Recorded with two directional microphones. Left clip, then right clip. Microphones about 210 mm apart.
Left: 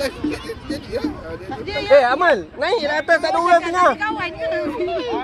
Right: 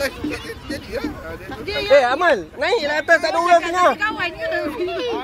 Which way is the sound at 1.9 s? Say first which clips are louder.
Left 1 dB; 45° right (ahead or behind).